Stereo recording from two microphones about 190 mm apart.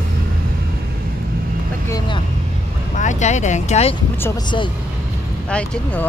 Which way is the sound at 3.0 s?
40° left (ahead or behind).